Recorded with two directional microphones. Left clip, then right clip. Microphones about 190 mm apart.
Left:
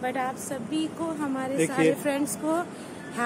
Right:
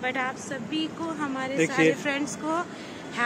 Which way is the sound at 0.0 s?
30° left (ahead or behind).